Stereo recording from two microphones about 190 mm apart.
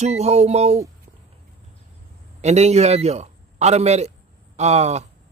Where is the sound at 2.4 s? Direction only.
35° right (ahead or behind).